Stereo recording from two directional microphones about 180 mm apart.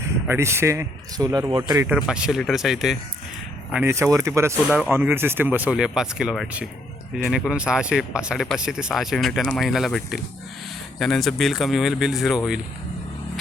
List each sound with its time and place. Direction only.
0.3 s speech: 15° right (ahead or behind)
1.9 s speech: 5° right (ahead or behind)